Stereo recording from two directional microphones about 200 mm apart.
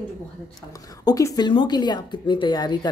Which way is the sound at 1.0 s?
20° left (ahead or behind).